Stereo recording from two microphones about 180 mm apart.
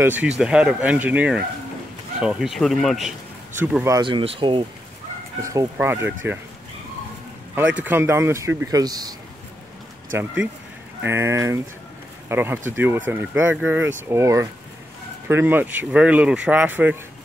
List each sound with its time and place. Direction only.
0.0 s speech: 10° right (ahead or behind)
3.9 s speech: 25° right (ahead or behind)
5.4 s speech: 20° right (ahead or behind)
7.5 s speech: 10° right (ahead or behind)
10.1 s speech: 5° right (ahead or behind)